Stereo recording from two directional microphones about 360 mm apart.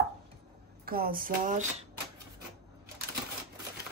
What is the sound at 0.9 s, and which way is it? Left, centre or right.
Speech, right.